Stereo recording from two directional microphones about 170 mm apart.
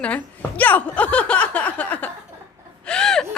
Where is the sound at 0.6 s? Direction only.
10° left (ahead or behind).